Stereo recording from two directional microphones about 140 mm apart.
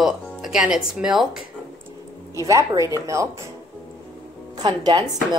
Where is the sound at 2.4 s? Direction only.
25° right (ahead or behind).